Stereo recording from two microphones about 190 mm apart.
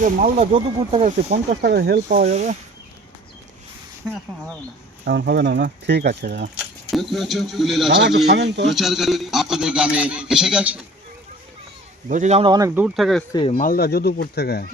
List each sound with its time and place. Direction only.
0.0 s speech: 40° right (ahead or behind)
1.6 s speech: 60° right (ahead or behind)
2.0 s speech: 35° right (ahead or behind)
5.0 s speech: 60° right (ahead or behind)
6.9 s a man's voice: centre (ahead or behind)
7.9 s speech: 65° right (ahead or behind)
8.7 s a man's voice: centre (ahead or behind)
12.0 s speech: 40° right (ahead or behind)
12.5 s speech: 15° right (ahead or behind)
13.5 s speech: 45° left (ahead or behind)